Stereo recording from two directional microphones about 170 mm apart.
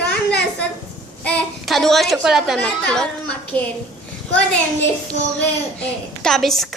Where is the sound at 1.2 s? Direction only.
10° left (ahead or behind).